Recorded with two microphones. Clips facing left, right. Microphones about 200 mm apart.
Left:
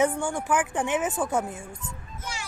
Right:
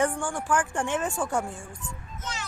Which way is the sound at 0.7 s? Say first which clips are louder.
Left 2 dB; 20° left (ahead or behind).